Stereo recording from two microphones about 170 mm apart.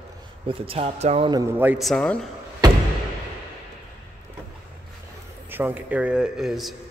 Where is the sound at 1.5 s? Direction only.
10° right (ahead or behind).